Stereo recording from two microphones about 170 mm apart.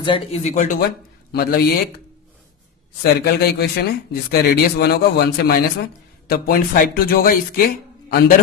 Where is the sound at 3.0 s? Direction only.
70° left (ahead or behind).